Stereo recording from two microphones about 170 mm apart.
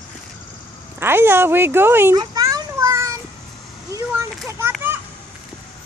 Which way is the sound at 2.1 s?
25° right (ahead or behind).